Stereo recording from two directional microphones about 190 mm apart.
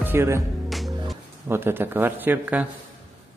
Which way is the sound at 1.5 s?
10° right (ahead or behind).